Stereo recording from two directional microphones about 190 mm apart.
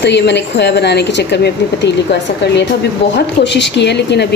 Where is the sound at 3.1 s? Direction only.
65° left (ahead or behind).